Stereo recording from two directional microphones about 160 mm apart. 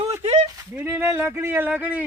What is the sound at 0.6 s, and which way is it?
Speech, 15° right (ahead or behind).